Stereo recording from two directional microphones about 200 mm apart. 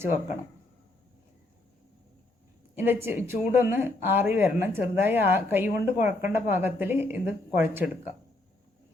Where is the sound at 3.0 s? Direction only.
10° right (ahead or behind).